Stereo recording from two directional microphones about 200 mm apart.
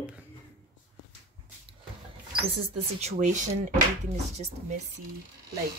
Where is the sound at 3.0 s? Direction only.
35° right (ahead or behind).